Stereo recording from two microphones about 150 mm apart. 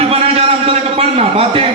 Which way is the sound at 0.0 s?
40° right (ahead or behind).